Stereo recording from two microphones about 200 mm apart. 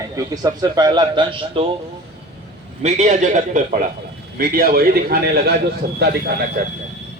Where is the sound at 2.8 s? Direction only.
35° right (ahead or behind); by 5.5 s 50° right (ahead or behind).